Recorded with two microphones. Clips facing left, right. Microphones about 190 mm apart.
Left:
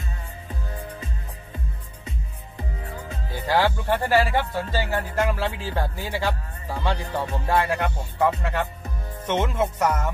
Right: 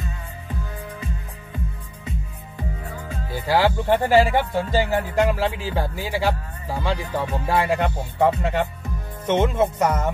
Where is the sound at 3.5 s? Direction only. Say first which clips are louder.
Right 3 dB; 15° right (ahead or behind).